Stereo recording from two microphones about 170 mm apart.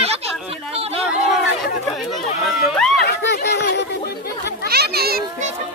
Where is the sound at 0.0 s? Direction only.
35° right (ahead or behind).